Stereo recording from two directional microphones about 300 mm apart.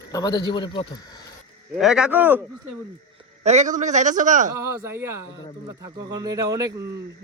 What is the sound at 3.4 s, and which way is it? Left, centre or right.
A man's voice, right.